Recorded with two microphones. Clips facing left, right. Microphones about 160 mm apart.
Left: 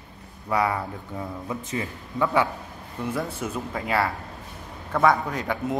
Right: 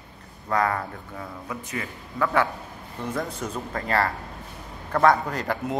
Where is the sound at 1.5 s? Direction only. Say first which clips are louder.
Left 2 dB; 25° left (ahead or behind); by 5.7 s centre (ahead or behind).